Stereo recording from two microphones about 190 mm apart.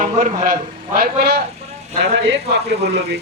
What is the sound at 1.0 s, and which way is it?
Speech, 55° right (ahead or behind).